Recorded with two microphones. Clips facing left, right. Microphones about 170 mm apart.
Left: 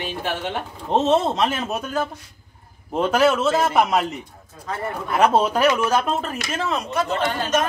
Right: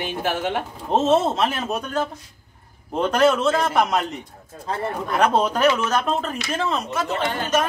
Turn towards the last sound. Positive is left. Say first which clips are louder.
# left 1 dB
turn(degrees=-5)  # may be behind; listen again after turning